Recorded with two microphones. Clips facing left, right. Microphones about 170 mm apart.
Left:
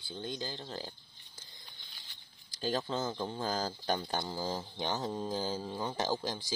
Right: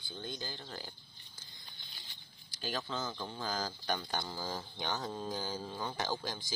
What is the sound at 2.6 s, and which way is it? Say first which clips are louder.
Speech: left 5 dB; 30° left (ahead or behind).